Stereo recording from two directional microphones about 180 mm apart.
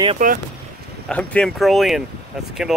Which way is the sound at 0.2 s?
45° right (ahead or behind).